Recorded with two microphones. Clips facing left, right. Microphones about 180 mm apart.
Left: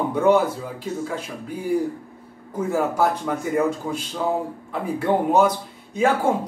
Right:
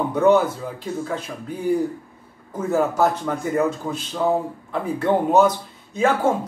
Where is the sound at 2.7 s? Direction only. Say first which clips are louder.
Right 2 dB; 10° left (ahead or behind).